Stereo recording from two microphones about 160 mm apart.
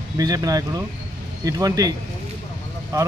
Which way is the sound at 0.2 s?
25° right (ahead or behind).